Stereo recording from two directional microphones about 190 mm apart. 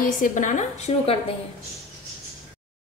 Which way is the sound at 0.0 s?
45° left (ahead or behind).